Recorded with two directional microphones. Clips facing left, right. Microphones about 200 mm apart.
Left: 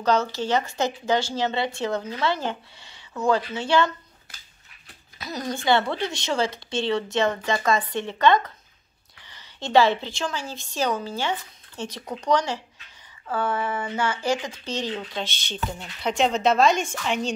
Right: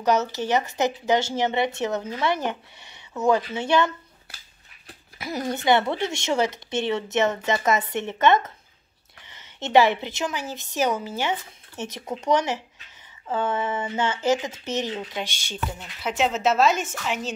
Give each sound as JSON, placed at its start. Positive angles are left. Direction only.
{"t": 0.0, "sound": "a woman's voice", "side_deg": -20}